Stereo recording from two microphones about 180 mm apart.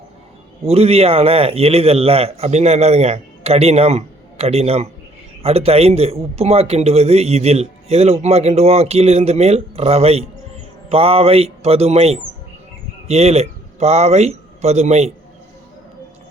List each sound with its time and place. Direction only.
0.6 s a man's voice: 35° right (ahead or behind)